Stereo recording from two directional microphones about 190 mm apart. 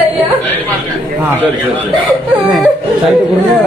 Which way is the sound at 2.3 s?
Centre (ahead or behind).